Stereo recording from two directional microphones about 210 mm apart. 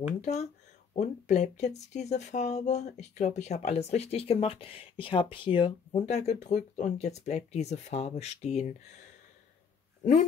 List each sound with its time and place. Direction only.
0.2 s speech: 30° left (ahead or behind)